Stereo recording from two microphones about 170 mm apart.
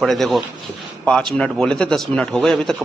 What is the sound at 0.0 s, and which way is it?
A man's voice, centre (ahead or behind).